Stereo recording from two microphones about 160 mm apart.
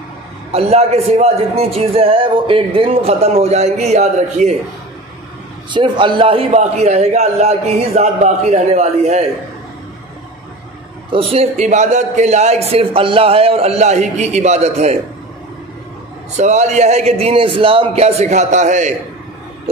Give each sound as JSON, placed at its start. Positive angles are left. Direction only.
{"t": 0.5, "sound": "a man's voice", "side_deg": -40}
{"t": 5.7, "sound": "a man's voice", "side_deg": -30}
{"t": 11.1, "sound": "a man's voice", "side_deg": -40}
{"t": 16.3, "sound": "a man's voice", "side_deg": -45}